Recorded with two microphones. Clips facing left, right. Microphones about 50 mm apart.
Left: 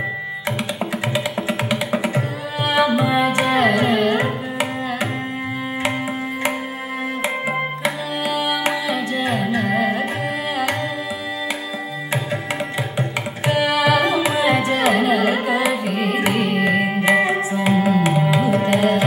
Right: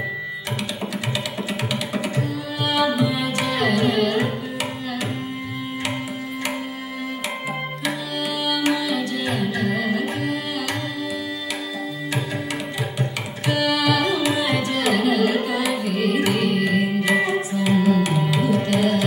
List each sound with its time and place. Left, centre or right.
1.1 s music: left
8.4 s music: left
9.7 s tabla: left
13.5 s tabla: left
15.1 s music: left